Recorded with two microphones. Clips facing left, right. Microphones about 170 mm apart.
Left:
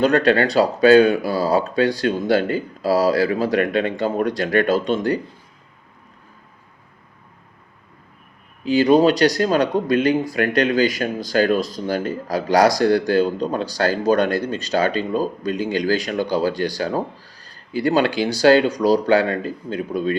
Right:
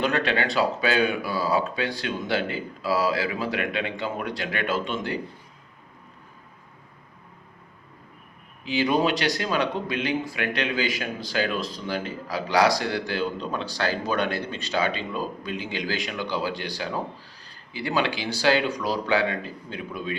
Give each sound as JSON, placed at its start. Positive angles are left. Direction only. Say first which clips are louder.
{"t": 0.0, "sound": "speech", "louder": "left 9 dB", "side_deg": 40}
{"t": 8.6, "sound": "speech", "louder": "left 9 dB", "side_deg": 40}